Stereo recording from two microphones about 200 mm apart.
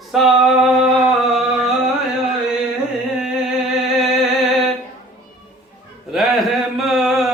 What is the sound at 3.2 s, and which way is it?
Music, centre (ahead or behind).